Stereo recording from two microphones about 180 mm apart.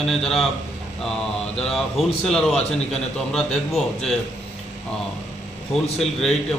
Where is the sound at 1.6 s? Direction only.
5° left (ahead or behind).